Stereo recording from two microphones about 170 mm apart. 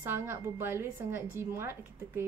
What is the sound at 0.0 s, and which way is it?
Speech, 15° right (ahead or behind).